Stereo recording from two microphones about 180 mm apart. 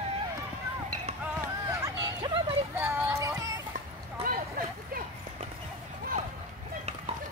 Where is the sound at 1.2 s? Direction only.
15° right (ahead or behind).